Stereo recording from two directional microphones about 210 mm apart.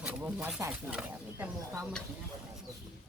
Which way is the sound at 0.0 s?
5° right (ahead or behind).